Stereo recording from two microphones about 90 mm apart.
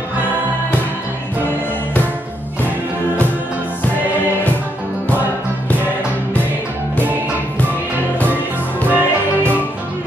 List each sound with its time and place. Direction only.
8.8 s music: 20° right (ahead or behind)